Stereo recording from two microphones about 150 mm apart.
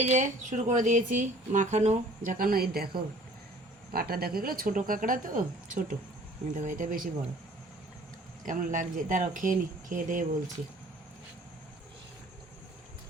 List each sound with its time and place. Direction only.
0.0 s speech: 50° right (ahead or behind); by 2.9 s 90° right
3.9 s speech: 85° right; by 7.1 s 65° right (ahead or behind)
8.4 s speech: 60° right (ahead or behind)